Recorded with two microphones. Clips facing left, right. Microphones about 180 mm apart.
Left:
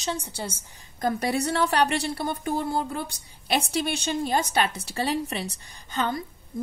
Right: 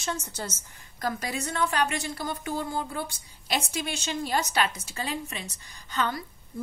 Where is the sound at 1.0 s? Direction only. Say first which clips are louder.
Left 6 dB; 30° left (ahead or behind).